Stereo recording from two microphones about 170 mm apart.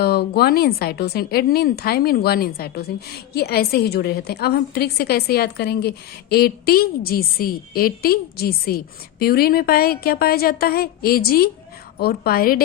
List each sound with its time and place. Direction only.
0.0 s a woman's voice: 65° left (ahead or behind)